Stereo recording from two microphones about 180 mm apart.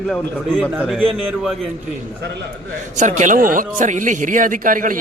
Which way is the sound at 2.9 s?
40° right (ahead or behind).